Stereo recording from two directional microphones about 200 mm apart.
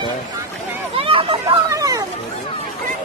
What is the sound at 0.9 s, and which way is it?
Hubbub, 30° right (ahead or behind).